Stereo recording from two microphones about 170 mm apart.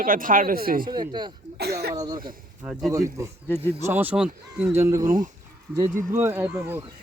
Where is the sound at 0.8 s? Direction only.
25° right (ahead or behind).